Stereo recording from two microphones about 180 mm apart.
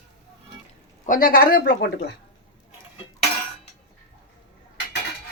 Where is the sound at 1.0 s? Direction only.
50° left (ahead or behind).